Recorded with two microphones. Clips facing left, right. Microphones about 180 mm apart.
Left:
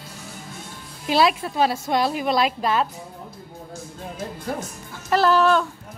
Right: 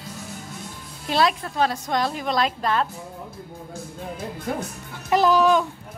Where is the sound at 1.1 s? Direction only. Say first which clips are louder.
Left 2 dB; 5° left (ahead or behind).